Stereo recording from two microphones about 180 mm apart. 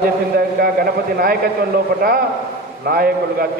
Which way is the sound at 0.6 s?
60° right (ahead or behind).